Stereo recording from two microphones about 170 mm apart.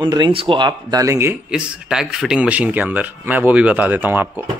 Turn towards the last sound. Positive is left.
turn(degrees=-10)  # may be behind; listen again after turning